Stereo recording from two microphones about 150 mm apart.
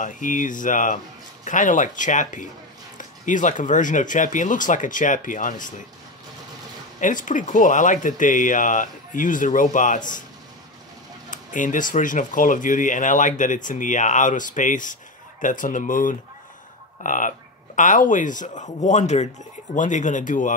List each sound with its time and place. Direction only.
0.0 s speech: 60° left (ahead or behind)
7.0 s speech: 60° left (ahead or behind)
11.2 s speech: 60° left (ahead or behind)